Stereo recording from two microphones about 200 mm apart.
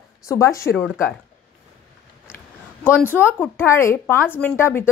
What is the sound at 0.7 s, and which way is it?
Speech, centre (ahead or behind).